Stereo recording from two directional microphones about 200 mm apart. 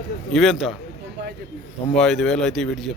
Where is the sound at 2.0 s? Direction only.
Centre (ahead or behind).